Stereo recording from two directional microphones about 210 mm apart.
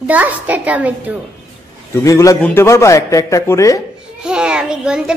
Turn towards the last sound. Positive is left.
turn(degrees=-5)  # may be behind; listen again after turning